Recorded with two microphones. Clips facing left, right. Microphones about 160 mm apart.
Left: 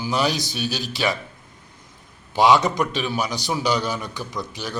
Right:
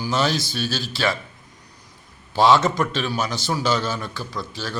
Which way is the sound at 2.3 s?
15° left (ahead or behind).